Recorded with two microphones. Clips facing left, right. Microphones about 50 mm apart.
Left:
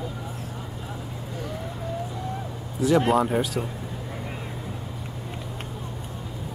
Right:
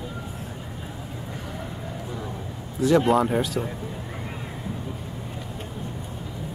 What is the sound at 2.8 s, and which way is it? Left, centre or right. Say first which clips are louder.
Speech: right 1 dB; centre.